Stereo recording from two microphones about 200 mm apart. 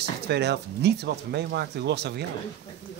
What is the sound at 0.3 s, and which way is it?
Speech, 55° right (ahead or behind).